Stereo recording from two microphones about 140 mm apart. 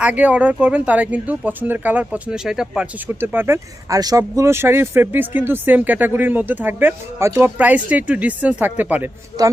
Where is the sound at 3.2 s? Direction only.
15° right (ahead or behind).